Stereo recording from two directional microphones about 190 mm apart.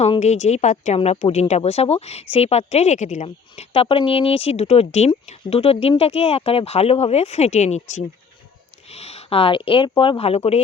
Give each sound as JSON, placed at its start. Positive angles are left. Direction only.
{"t": 0.0, "sound": "speech", "side_deg": 35}